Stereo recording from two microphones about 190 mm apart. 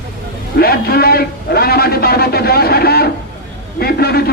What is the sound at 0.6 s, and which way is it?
A man's voice, 55° left (ahead or behind).